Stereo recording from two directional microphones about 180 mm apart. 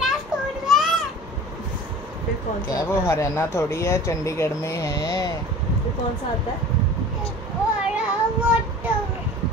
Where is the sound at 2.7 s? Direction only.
15° left (ahead or behind).